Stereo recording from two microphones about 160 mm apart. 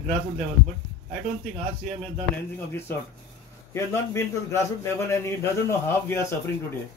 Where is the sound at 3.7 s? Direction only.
15° left (ahead or behind).